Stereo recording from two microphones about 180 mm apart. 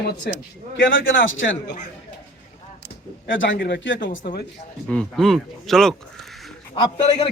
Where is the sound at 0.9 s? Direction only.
90° left.